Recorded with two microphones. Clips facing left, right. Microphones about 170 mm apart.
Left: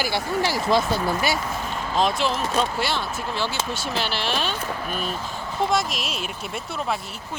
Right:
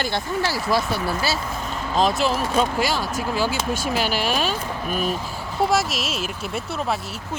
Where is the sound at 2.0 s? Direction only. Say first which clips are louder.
Right 2 dB; centre (ahead or behind).